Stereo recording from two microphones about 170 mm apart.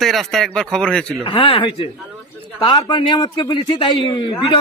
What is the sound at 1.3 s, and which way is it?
A man's voice, 30° left (ahead or behind).